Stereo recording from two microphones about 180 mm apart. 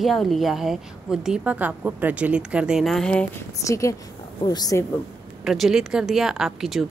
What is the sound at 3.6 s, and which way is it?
A woman's voice, 15° left (ahead or behind).